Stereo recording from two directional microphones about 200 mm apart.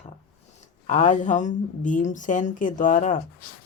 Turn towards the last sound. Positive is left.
turn(degrees=40)  # may be behind; listen again after turning